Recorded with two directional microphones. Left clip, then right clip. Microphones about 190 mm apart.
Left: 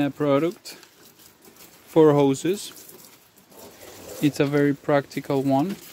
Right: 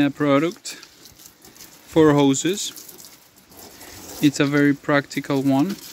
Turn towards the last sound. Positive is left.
turn(degrees=0)  # may be behind; listen again after turning